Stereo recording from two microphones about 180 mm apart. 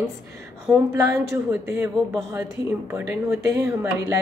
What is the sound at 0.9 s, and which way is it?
Speech, 15° right (ahead or behind).